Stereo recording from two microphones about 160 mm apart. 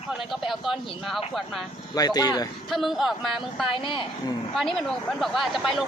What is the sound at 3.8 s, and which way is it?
Speech, 30° left (ahead or behind).